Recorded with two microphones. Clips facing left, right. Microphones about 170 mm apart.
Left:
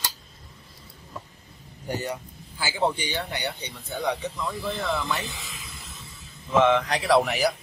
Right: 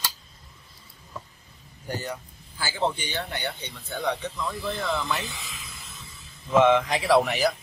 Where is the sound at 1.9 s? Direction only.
20° left (ahead or behind); by 5.2 s 5° left (ahead or behind).